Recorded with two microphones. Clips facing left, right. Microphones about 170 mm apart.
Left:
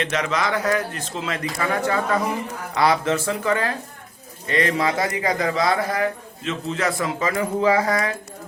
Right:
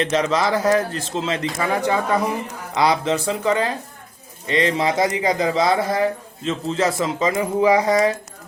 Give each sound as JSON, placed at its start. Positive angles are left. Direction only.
{"t": 0.0, "sound": "speech", "side_deg": -30}